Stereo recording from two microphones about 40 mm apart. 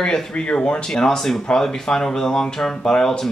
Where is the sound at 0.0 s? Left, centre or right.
Centre.